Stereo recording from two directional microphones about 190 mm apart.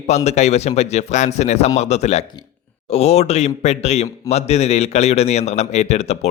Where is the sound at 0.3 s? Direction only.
35° left (ahead or behind).